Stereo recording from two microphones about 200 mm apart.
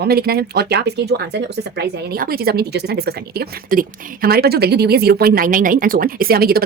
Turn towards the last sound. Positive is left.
turn(degrees=-50)  # may be behind; listen again after turning